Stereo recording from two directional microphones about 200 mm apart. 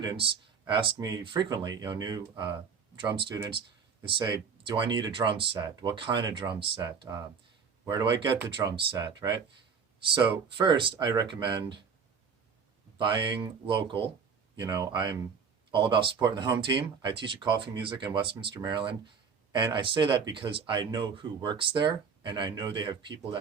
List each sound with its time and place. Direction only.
0.0 s speech: 20° right (ahead or behind)
13.0 s speech: 25° right (ahead or behind)